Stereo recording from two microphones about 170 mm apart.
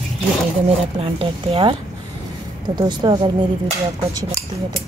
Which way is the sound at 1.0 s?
35° right (ahead or behind).